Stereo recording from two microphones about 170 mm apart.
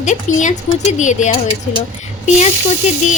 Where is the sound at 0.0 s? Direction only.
45° left (ahead or behind).